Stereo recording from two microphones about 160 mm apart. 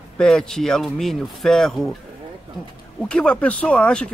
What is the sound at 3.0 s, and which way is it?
Speech, 5° left (ahead or behind).